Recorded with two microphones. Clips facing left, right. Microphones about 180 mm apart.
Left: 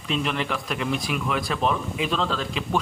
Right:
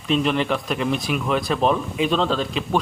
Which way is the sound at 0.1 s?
25° right (ahead or behind).